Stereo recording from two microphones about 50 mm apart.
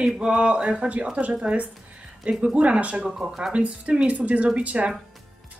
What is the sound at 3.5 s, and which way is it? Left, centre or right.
Speech, right.